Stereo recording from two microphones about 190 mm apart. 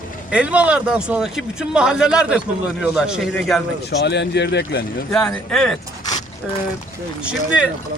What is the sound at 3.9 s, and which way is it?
Speech, 60° left (ahead or behind).